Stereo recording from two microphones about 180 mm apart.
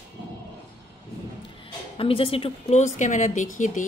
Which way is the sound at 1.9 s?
30° left (ahead or behind).